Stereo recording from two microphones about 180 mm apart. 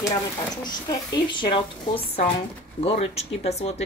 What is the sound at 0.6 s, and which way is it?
Speech, 25° left (ahead or behind).